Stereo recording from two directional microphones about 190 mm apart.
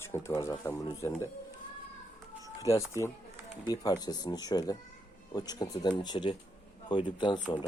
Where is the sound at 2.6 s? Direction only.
15° left (ahead or behind).